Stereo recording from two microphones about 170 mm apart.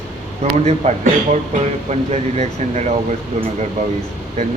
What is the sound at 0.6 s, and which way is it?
Speech, 40° right (ahead or behind).